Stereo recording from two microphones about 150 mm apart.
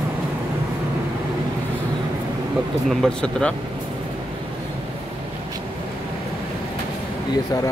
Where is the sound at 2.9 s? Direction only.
5° left (ahead or behind).